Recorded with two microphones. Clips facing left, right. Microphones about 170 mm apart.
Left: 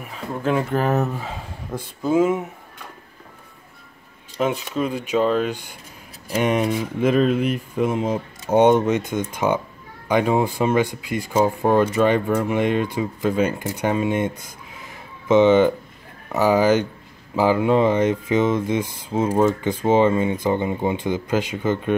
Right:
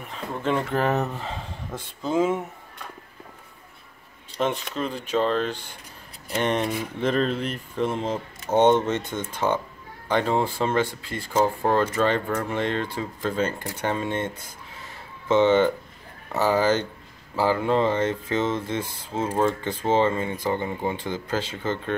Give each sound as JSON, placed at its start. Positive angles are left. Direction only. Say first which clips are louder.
{"t": 0.0, "sound": "speech", "louder": "left 3 dB", "side_deg": 5}
{"t": 4.4, "sound": "speech", "louder": "left 4 dB", "side_deg": 5}